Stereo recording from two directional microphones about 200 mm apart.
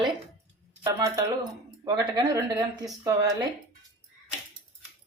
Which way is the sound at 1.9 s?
20° right (ahead or behind).